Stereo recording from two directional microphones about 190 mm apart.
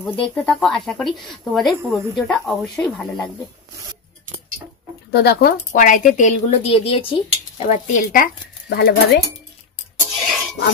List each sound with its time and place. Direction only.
0.0 s speech: 5° left (ahead or behind)
5.1 s speech: 55° left (ahead or behind)